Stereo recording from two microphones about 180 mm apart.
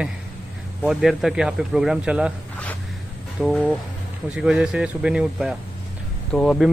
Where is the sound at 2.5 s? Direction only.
10° left (ahead or behind).